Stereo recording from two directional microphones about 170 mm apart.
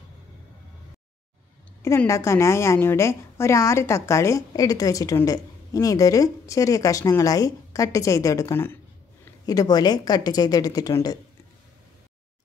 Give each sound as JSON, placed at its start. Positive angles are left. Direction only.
{"t": 1.8, "sound": "a woman's voice", "side_deg": 15}